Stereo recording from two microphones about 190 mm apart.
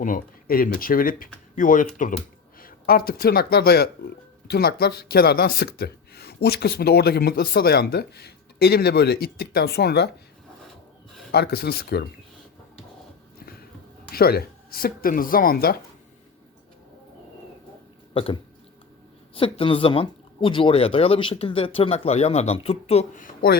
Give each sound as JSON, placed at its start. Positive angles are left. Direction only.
{"t": 0.0, "sound": "speech", "side_deg": 50}
{"t": 11.3, "sound": "speech", "side_deg": 55}
{"t": 14.1, "sound": "speech", "side_deg": 55}
{"t": 18.1, "sound": "speech", "side_deg": 30}